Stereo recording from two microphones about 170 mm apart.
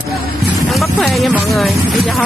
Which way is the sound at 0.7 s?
Centre (ahead or behind).